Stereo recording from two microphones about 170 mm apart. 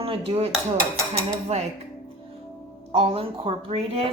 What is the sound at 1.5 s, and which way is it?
Speech, 40° right (ahead or behind).